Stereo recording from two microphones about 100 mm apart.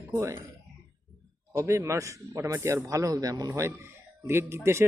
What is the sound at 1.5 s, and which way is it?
Speech, 30° right (ahead or behind).